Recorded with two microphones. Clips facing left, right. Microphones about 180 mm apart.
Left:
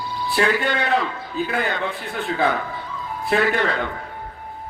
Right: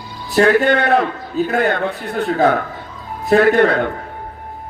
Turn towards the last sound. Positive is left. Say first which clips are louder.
# right 8 dB
turn(degrees=-55)  # may be behind; listen again after turning